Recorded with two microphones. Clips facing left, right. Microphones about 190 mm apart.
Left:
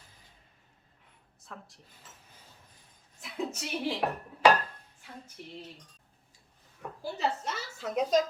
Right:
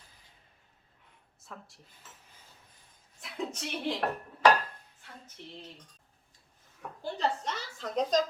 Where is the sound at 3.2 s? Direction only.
Centre (ahead or behind).